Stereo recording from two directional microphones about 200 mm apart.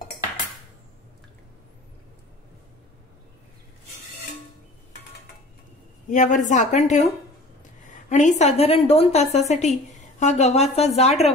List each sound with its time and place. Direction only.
6.0 s a woman's voice: 40° left (ahead or behind)
8.1 s a woman's voice: 35° left (ahead or behind)